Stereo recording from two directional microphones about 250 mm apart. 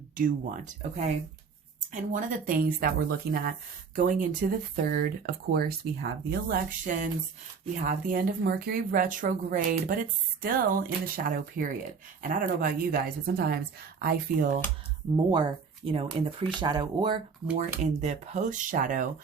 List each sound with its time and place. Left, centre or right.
0.2 s speech: right
15.1 s speech: centre
17.7 s speech: right